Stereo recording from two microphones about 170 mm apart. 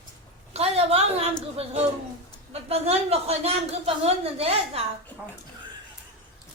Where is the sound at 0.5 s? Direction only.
35° right (ahead or behind).